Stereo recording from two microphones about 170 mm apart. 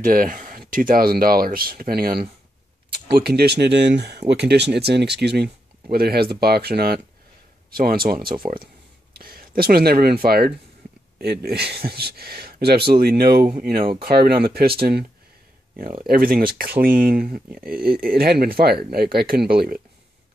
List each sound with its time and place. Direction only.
0.0 s speech: 55° right (ahead or behind)